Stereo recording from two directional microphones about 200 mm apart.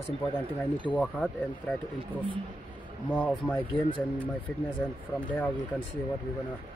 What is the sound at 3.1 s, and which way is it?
Speech, 5° left (ahead or behind).